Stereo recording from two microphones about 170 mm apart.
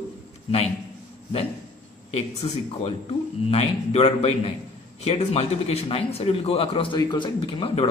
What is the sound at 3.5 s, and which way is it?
A man's voice, 35° left (ahead or behind).